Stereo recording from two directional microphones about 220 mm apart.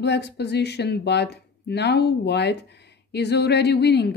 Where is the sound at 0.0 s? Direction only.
50° left (ahead or behind).